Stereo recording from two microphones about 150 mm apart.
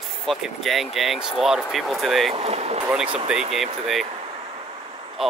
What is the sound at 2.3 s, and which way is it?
Vehicle, 45° right (ahead or behind).